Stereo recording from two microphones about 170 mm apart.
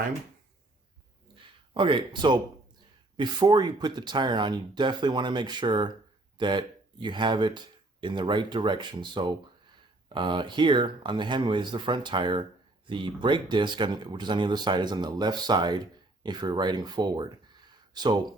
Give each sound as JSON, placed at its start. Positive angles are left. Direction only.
{"t": 1.7, "sound": "speech", "side_deg": -30}